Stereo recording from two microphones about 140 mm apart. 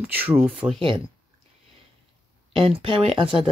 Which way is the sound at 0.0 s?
15° right (ahead or behind).